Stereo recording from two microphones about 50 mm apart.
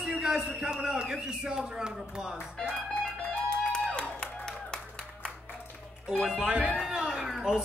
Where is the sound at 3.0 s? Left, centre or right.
Centre.